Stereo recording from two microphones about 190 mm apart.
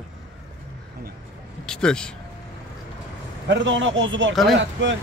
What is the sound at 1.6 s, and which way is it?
Speech, 5° left (ahead or behind).